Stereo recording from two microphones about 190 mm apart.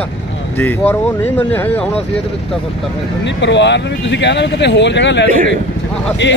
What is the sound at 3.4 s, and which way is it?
Speech, 70° left (ahead or behind).